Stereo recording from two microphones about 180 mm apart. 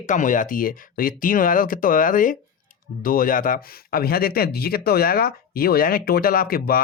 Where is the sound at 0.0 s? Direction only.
45° left (ahead or behind).